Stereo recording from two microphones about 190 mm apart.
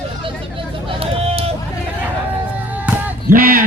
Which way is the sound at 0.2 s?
25° right (ahead or behind).